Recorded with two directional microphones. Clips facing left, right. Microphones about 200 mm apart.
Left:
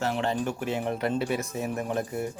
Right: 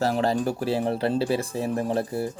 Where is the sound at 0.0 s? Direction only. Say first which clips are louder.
Right 4 dB; 35° right (ahead or behind).